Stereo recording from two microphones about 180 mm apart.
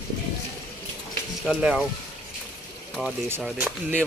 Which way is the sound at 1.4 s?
5° right (ahead or behind).